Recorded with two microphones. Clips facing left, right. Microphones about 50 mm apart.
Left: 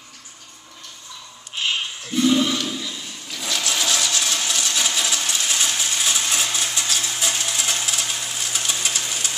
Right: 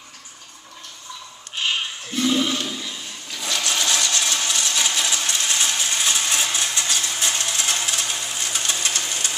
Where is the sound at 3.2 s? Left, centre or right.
Centre.